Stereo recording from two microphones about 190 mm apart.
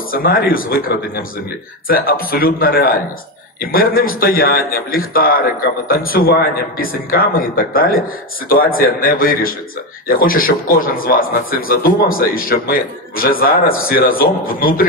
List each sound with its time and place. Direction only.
0.1 s a man's voice: 50° left (ahead or behind)